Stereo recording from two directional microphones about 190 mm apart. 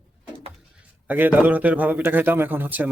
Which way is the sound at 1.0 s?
10° right (ahead or behind).